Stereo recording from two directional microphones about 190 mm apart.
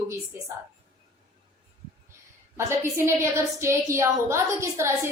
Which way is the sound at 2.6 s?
15° right (ahead or behind).